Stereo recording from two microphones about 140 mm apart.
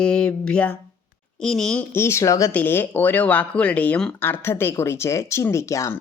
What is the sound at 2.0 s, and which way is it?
Speech, 20° left (ahead or behind).